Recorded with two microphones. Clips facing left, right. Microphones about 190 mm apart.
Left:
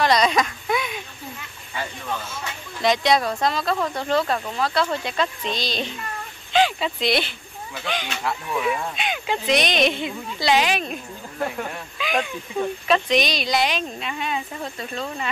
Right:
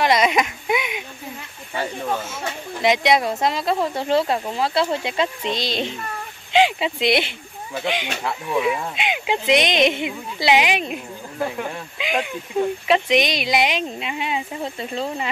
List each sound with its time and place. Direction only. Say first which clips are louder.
0.0 s baby cry: right 1 dB; 20° right (ahead or behind)
2.8 s speech: right 1 dB; 20° right (ahead or behind)
12.0 s speech: even; 20° right (ahead or behind)